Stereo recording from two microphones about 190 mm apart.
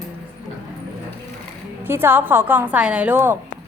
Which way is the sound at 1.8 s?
10° right (ahead or behind).